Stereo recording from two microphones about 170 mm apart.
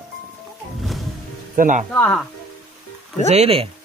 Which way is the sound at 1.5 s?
50° right (ahead or behind).